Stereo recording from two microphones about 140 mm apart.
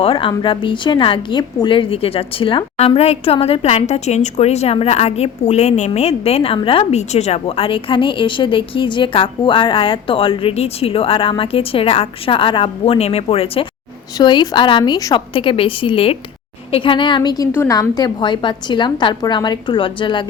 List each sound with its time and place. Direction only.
0.0 s a woman's voice: 40° left (ahead or behind)
14.2 s a woman's voice: 30° left (ahead or behind)